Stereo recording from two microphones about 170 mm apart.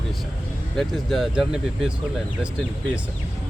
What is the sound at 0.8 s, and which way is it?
Speech, centre (ahead or behind).